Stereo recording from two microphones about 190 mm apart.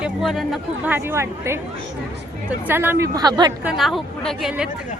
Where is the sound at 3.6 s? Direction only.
Centre (ahead or behind).